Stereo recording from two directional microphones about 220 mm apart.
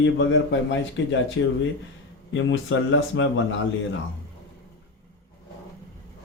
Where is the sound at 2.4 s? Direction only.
60° left (ahead or behind).